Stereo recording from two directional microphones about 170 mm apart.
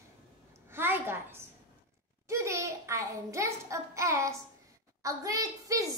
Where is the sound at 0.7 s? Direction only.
10° right (ahead or behind).